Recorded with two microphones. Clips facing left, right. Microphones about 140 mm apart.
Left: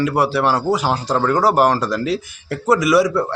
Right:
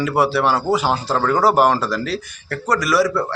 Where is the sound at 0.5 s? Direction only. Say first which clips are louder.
Even; 10° left (ahead or behind).